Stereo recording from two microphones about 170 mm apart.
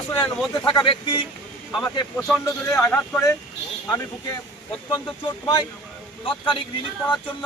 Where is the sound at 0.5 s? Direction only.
25° left (ahead or behind).